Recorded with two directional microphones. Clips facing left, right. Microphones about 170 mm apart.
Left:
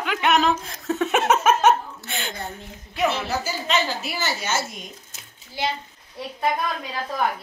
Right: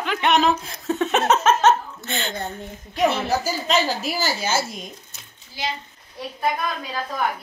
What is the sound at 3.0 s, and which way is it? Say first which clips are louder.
A woman's voice: right 3 dB; 40° right (ahead or behind).